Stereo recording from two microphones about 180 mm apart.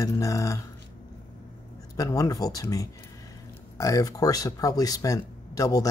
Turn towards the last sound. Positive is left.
turn(degrees=20)  # may be behind; listen again after turning